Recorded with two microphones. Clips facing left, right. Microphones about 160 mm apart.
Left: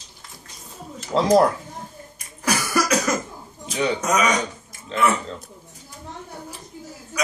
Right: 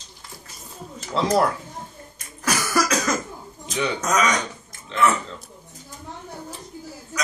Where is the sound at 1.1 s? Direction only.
40° left (ahead or behind).